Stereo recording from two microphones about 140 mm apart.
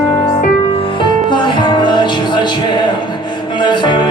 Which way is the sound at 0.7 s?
40° left (ahead or behind).